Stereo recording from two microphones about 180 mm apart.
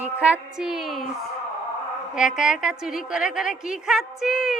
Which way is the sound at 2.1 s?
5° right (ahead or behind).